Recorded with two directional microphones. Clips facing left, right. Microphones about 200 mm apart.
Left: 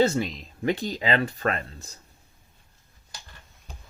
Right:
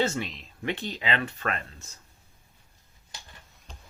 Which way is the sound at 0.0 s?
35° left (ahead or behind).